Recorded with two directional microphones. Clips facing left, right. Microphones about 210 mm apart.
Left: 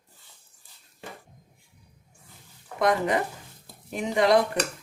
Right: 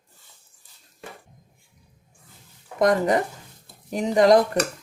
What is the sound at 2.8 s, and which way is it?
Speech, 40° right (ahead or behind).